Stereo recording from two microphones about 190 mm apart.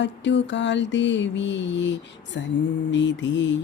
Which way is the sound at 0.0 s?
70° left (ahead or behind).